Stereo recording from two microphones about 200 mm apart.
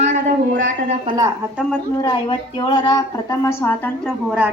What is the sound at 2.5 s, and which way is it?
A woman's voice, 20° left (ahead or behind).